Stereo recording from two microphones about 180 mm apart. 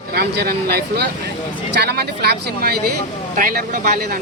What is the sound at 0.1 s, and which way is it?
Speech, 60° right (ahead or behind).